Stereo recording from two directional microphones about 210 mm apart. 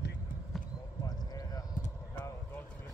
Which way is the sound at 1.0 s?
15° left (ahead or behind).